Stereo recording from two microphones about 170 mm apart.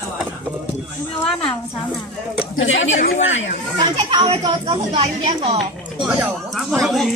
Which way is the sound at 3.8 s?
25° right (ahead or behind).